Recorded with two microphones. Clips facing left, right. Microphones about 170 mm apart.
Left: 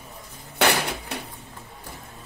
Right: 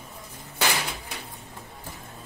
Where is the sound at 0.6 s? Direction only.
65° left (ahead or behind).